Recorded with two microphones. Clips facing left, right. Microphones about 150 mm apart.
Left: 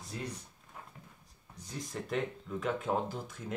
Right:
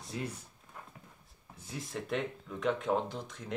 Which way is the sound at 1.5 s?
5° right (ahead or behind).